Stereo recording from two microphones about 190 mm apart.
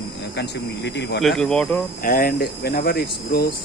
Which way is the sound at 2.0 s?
50° left (ahead or behind).